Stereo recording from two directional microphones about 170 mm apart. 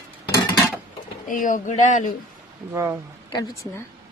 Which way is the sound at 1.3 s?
50° left (ahead or behind).